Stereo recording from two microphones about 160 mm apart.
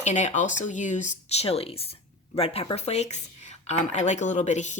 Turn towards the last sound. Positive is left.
turn(degrees=50)  # may be behind; listen again after turning